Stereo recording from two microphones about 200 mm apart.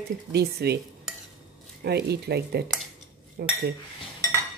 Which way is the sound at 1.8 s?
55° right (ahead or behind).